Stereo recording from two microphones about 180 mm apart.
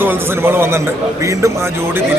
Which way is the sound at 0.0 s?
10° right (ahead or behind).